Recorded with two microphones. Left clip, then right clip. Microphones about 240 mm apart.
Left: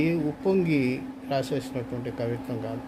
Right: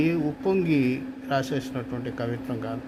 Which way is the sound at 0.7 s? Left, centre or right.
Right.